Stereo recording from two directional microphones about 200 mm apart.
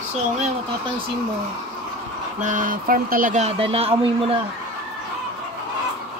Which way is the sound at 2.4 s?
40° right (ahead or behind).